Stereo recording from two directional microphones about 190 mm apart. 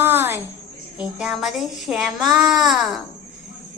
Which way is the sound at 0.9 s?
5° right (ahead or behind).